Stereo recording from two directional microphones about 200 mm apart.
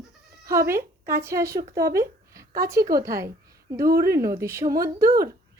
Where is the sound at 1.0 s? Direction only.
15° right (ahead or behind).